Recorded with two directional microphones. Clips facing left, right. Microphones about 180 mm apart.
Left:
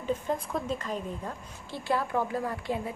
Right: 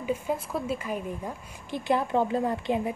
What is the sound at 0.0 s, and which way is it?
A woman's voice, 10° right (ahead or behind).